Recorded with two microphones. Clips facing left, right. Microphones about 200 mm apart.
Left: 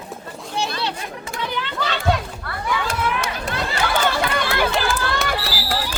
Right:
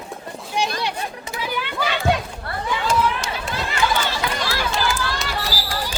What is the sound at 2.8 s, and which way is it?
Run, 60° left (ahead or behind).